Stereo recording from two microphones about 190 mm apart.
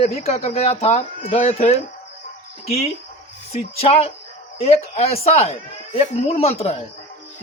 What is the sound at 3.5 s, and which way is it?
A man's voice, 30° left (ahead or behind).